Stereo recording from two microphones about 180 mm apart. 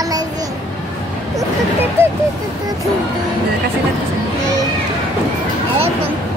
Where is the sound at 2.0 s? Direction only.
15° right (ahead or behind).